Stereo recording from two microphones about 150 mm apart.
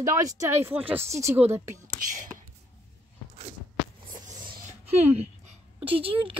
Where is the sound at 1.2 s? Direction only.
45° right (ahead or behind).